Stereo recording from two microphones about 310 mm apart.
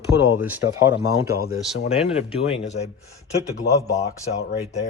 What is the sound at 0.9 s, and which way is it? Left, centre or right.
Speech, left.